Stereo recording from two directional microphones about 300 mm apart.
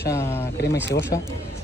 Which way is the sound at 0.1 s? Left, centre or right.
Centre.